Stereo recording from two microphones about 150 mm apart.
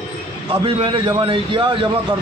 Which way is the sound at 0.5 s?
35° right (ahead or behind).